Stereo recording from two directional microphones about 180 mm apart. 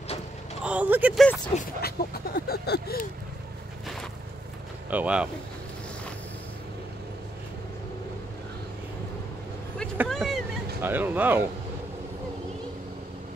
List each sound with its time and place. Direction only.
0.7 s speech: 10° right (ahead or behind)
1.8 s a sound: 60° left (ahead or behind)
4.8 s speech: 10° right (ahead or behind)
10.0 s vehicle: centre (ahead or behind)
10.8 s speech: 10° right (ahead or behind)